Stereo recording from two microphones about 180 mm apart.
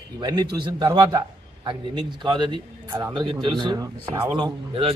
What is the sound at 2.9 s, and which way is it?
Speech, 15° right (ahead or behind).